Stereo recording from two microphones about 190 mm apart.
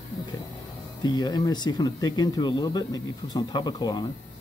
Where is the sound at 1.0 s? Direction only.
20° left (ahead or behind).